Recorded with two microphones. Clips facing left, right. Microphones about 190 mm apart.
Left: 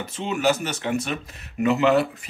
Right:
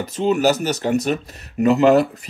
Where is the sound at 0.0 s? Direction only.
40° right (ahead or behind).